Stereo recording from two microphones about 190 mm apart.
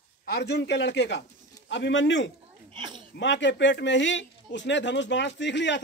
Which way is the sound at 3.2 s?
70° left (ahead or behind).